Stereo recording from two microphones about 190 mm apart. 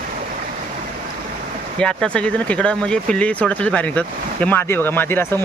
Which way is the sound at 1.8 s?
5° left (ahead or behind).